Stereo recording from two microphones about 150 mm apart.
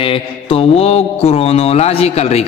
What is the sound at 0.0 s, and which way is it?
Mantra, 35° left (ahead or behind).